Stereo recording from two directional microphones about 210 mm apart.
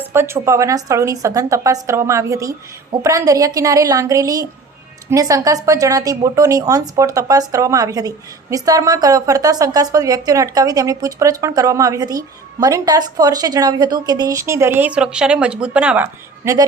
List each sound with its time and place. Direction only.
0.0 s a woman's voice: 10° right (ahead or behind)